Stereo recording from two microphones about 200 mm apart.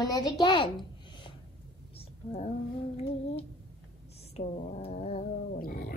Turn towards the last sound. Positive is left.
turn(degrees=45)  # may be behind; listen again after turning